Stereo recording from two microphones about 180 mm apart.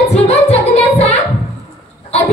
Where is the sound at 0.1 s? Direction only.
35° left (ahead or behind).